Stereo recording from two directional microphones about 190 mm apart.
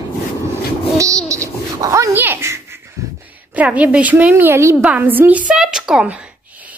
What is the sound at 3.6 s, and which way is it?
A woman's voice, 5° right (ahead or behind).